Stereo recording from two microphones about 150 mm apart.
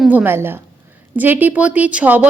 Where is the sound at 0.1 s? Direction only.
15° right (ahead or behind).